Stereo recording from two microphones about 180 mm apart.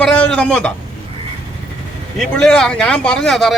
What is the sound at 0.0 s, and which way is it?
Speech, 5° left (ahead or behind).